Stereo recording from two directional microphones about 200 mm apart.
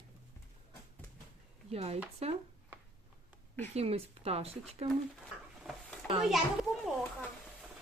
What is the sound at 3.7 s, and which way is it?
Speech, 30° right (ahead or behind).